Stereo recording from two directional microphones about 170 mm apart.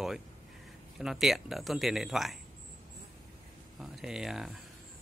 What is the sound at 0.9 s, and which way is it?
A man's voice, centre (ahead or behind).